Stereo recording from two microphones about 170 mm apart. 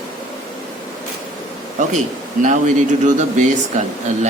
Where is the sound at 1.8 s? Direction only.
45° right (ahead or behind).